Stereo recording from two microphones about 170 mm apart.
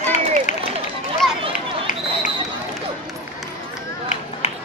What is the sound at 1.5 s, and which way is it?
Run, 50° left (ahead or behind).